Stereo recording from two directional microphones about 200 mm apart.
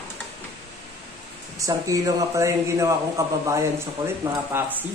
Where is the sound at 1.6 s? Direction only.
15° right (ahead or behind).